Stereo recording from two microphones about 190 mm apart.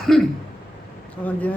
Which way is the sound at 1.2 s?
10° left (ahead or behind).